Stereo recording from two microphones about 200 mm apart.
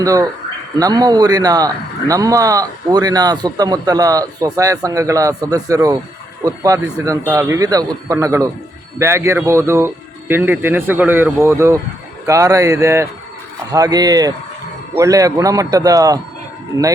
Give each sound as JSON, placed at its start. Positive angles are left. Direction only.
{"t": 0.0, "sound": "a man's voice", "side_deg": -15}